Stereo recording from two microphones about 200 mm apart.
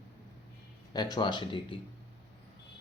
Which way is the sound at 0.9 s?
20° left (ahead or behind).